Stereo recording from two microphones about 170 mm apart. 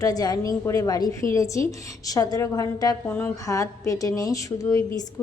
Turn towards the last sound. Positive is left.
turn(degrees=20)  # may be behind; listen again after turning